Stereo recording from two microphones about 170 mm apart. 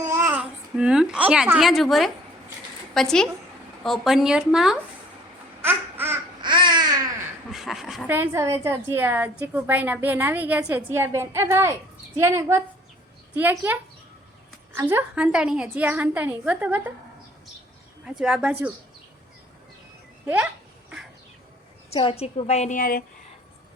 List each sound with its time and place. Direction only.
0.0 s babbling: 15° right (ahead or behind)
0.3 s a woman's voice: 5° right (ahead or behind)
5.6 s babbling: 10° right (ahead or behind)
6.4 s babbling: 25° right (ahead or behind)
7.5 s a sound: centre (ahead or behind)
8.0 s a woman's voice: 10° right (ahead or behind)
14.8 s a woman's voice: 10° right (ahead or behind)
18.0 s speech: 5° right (ahead or behind)
20.2 s a woman's voice: 10° right (ahead or behind)
21.8 s a woman's voice: 35° left (ahead or behind); by 23.0 s 55° left (ahead or behind)